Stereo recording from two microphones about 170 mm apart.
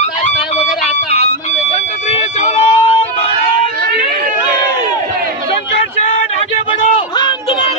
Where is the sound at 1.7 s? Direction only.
40° left (ahead or behind).